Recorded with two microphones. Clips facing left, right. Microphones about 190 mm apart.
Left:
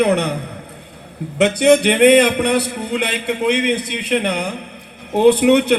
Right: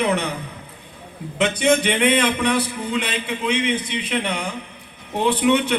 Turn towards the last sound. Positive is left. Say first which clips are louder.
# left 7 dB
turn(degrees=65)  # may be behind; listen again after turning